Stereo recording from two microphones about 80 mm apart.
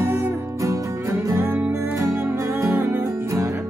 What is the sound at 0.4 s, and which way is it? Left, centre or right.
Music, right.